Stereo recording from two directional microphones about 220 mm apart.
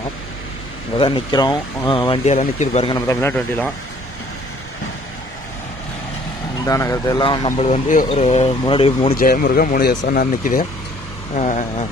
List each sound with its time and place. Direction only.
0.9 s speech: 20° left (ahead or behind)
3.1 s a man's voice: 10° left (ahead or behind)
6.6 s speech: 15° left (ahead or behind)
9.1 s speech: 40° left (ahead or behind)